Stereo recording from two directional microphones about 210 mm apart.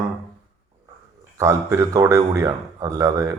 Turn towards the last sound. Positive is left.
turn(degrees=-15)  # may be behind; listen again after turning